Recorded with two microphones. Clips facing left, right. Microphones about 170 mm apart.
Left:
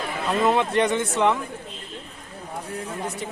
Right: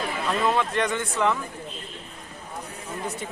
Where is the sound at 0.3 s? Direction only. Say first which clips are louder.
Left 4 dB; 20° left (ahead or behind).